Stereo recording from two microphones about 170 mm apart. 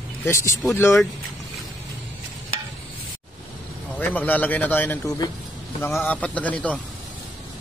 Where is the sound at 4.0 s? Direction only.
10° left (ahead or behind).